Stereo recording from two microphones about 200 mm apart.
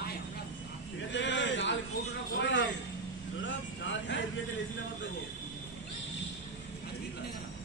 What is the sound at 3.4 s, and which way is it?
Vehicle, 65° left (ahead or behind).